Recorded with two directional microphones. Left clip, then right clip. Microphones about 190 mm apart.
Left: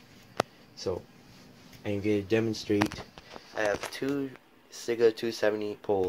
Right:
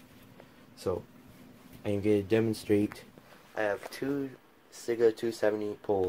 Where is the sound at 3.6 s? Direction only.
10° left (ahead or behind).